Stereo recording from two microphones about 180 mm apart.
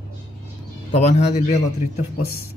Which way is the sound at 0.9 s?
35° left (ahead or behind).